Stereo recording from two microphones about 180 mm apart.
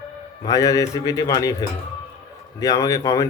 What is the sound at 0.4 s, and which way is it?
Speech, 20° left (ahead or behind).